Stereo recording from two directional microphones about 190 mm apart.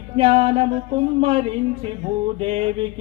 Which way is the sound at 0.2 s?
30° right (ahead or behind).